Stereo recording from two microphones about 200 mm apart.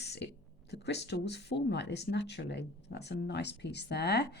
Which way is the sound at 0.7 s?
60° left (ahead or behind).